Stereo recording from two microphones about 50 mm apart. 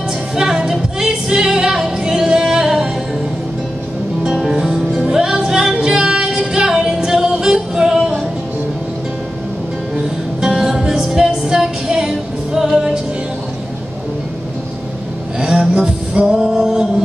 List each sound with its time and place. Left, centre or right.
0.4 s music: centre
4.2 s music: centre
10.4 s music: centre
15.4 s a sound: centre
16.3 s a capella: centre